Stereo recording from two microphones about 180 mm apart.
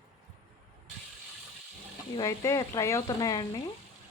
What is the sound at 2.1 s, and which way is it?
Speech, 20° left (ahead or behind).